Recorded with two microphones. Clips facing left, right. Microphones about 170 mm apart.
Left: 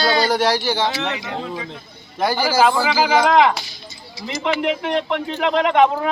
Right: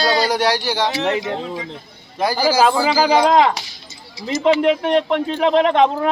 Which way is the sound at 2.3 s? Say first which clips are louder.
Right 1 dB; 40° right (ahead or behind).